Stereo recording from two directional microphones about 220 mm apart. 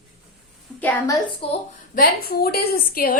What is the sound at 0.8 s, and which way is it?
Speech, 10° left (ahead or behind).